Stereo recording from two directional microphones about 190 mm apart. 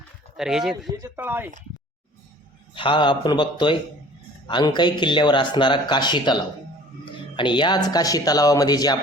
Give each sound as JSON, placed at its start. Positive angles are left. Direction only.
{"t": 0.3, "sound": "speech", "side_deg": -5}
{"t": 0.9, "sound": "speech", "side_deg": -15}
{"t": 2.7, "sound": "speech", "side_deg": 25}